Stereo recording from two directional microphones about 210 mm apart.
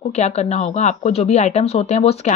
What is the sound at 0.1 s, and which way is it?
Speech, 30° left (ahead or behind).